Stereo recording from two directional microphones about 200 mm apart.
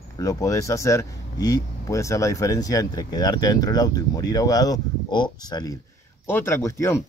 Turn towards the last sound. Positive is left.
turn(degrees=15)  # may be behind; listen again after turning